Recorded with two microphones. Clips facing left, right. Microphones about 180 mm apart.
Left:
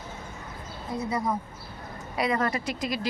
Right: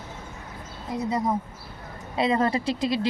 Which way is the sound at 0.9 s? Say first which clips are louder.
Right 3 dB; 20° right (ahead or behind).